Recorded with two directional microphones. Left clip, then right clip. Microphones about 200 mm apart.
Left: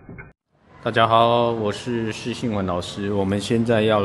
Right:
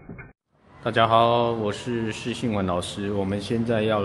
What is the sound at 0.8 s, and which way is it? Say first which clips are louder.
Speech: left 2 dB; 5° left (ahead or behind).